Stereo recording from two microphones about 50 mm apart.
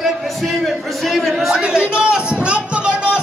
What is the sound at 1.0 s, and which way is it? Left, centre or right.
Speech, centre.